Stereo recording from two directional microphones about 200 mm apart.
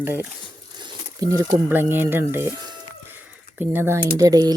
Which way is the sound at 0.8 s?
20° right (ahead or behind).